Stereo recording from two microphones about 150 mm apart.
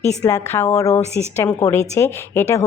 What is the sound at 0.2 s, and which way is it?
A woman's voice, 20° left (ahead or behind).